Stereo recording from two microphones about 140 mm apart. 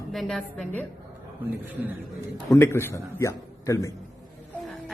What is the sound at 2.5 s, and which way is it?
A man's voice, 20° left (ahead or behind).